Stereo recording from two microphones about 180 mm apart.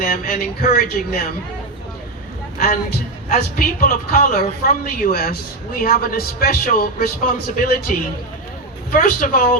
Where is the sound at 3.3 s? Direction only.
50° left (ahead or behind).